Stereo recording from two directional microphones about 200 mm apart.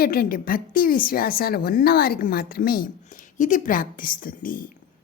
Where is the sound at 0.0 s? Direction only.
45° left (ahead or behind).